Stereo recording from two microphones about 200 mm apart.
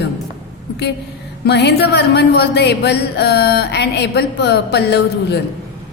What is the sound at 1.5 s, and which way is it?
Speech, 55° left (ahead or behind).